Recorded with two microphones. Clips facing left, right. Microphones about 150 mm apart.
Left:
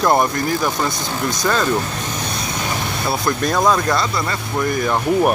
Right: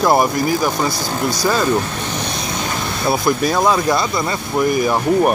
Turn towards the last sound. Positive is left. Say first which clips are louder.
# right 3 dB
turn(degrees=-10)  # may be behind; listen again after turning